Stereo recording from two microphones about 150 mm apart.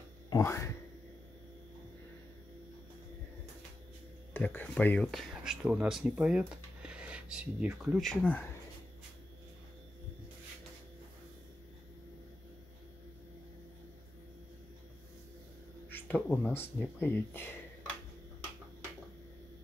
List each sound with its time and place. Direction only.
0.3 s speech: 20° left (ahead or behind)
4.3 s speech: 15° left (ahead or behind)
15.9 s speech: 10° left (ahead or behind)